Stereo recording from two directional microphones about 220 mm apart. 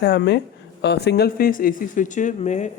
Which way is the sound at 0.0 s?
50° left (ahead or behind).